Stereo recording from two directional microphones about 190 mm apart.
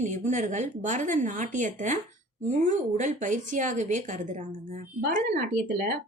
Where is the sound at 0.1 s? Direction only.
40° right (ahead or behind).